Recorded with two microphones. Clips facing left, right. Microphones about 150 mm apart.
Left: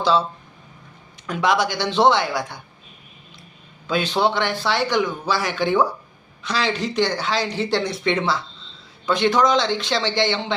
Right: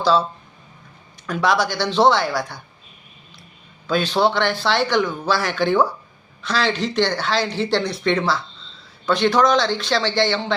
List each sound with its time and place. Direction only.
1.3 s speech: 20° left (ahead or behind)
3.8 s a man's voice: 20° left (ahead or behind)